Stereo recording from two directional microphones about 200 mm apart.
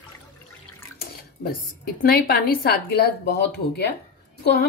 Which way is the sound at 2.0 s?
45° left (ahead or behind).